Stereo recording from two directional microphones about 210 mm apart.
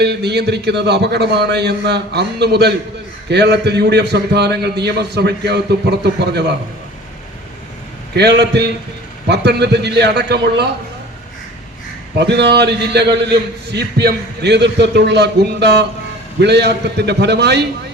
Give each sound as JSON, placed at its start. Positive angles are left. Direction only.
{"t": 0.0, "sound": "a man's voice", "side_deg": -50}
{"t": 8.1, "sound": "a man's voice", "side_deg": -55}
{"t": 12.1, "sound": "a man's voice", "side_deg": -55}